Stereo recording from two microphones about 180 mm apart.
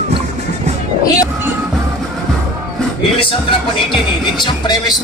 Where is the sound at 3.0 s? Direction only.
30° left (ahead or behind).